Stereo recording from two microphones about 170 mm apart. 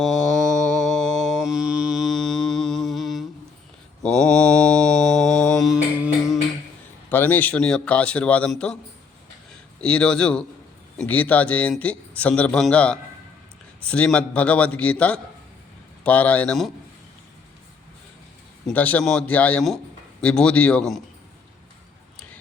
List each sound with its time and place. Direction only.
0.0 s mantra: centre (ahead or behind)
7.1 s a man's voice: 10° left (ahead or behind)
9.8 s a man's voice: 5° left (ahead or behind)
18.6 s a man's voice: 10° left (ahead or behind)